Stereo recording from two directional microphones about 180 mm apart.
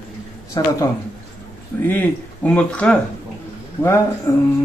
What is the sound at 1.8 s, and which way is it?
Speech, 10° left (ahead or behind).